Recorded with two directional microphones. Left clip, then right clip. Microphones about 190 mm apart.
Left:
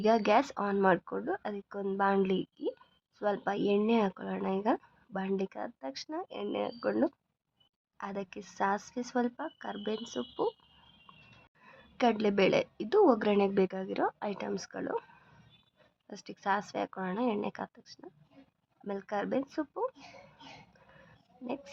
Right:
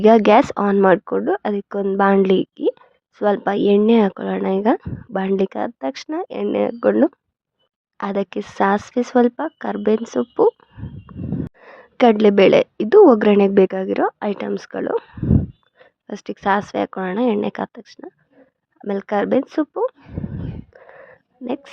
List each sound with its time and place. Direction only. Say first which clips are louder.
0.0 s a woman's voice: right 15 dB; 45° right (ahead or behind)
11.6 s a woman's voice: right 15 dB; 40° right (ahead or behind)
21.4 s a woman's voice: right 13 dB; 35° right (ahead or behind)